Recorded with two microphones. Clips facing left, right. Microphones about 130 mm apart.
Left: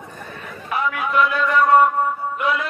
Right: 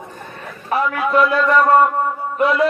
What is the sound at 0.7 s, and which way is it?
Music, 35° right (ahead or behind).